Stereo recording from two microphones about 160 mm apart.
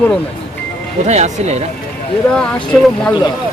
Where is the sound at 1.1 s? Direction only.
45° right (ahead or behind).